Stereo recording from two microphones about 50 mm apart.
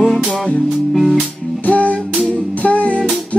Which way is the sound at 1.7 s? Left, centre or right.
Left.